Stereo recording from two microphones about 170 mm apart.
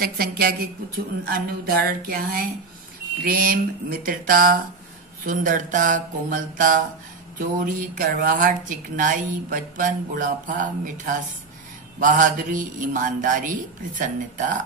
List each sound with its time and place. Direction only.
0.0 s speech: 60° right (ahead or behind)